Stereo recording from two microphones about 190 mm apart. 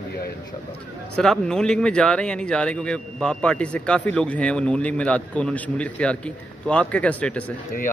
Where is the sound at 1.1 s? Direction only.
5° left (ahead or behind).